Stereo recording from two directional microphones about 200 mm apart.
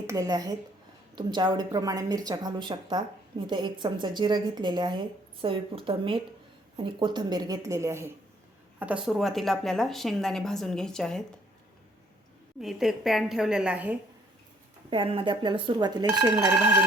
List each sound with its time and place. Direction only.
0.1 s a woman's voice: 15° right (ahead or behind)
9.0 s a woman's voice: centre (ahead or behind)
12.5 s a woman's voice: centre (ahead or behind)
14.8 s a woman's voice: 25° right (ahead or behind)